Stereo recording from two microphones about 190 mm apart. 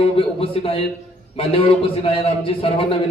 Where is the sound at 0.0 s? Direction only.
30° left (ahead or behind).